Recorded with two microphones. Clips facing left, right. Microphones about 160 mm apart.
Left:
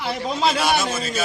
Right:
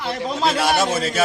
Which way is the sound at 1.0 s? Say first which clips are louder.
Right 4 dB; 70° right (ahead or behind).